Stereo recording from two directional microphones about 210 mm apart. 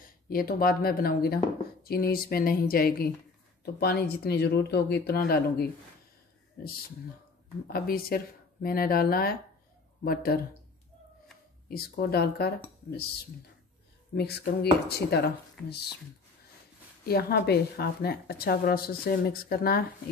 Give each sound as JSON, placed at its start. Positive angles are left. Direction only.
{"t": 0.3, "sound": "speech", "side_deg": 45}
{"t": 7.7, "sound": "speech", "side_deg": 45}
{"t": 11.7, "sound": "speech", "side_deg": 45}
{"t": 14.1, "sound": "speech", "side_deg": 50}
{"t": 17.0, "sound": "speech", "side_deg": 50}